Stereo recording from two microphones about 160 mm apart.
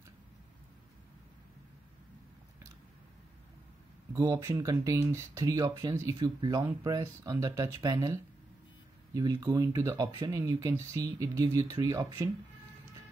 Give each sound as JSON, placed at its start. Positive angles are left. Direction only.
{"t": 4.1, "sound": "speech", "side_deg": -20}